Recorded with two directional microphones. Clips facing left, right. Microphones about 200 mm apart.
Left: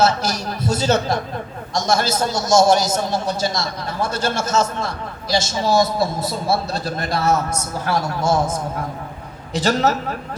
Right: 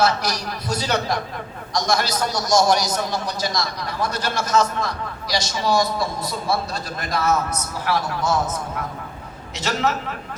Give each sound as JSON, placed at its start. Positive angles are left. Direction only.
{"t": 0.0, "sound": "a man's voice", "side_deg": 25}
{"t": 9.6, "sound": "a man's voice", "side_deg": 35}